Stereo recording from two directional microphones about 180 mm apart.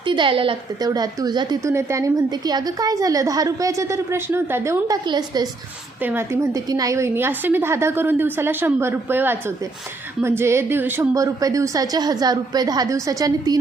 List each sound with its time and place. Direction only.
0.0 s a woman's voice: 25° right (ahead or behind)
6.0 s a woman's voice: 10° right (ahead or behind)